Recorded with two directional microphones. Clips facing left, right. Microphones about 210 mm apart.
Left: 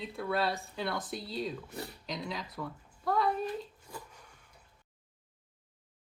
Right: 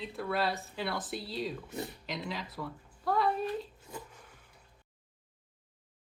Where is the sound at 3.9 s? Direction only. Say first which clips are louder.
Right 3 dB; 20° right (ahead or behind).